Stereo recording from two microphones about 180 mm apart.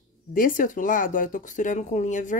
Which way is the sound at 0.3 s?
50° left (ahead or behind).